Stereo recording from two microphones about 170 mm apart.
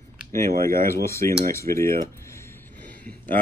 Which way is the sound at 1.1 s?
15° left (ahead or behind).